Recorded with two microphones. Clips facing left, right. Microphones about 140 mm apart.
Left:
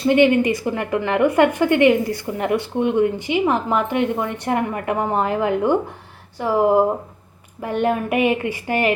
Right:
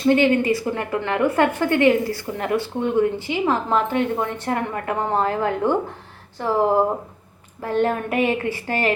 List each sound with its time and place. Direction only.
0.1 s a woman's voice: 15° left (ahead or behind)